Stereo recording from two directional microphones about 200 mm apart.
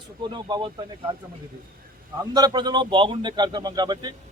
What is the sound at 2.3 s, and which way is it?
A man's voice, 20° right (ahead or behind).